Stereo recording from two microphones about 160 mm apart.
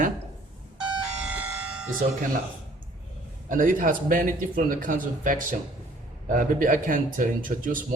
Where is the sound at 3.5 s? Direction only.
55° right (ahead or behind).